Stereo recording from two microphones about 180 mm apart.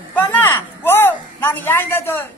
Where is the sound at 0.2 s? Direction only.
10° left (ahead or behind).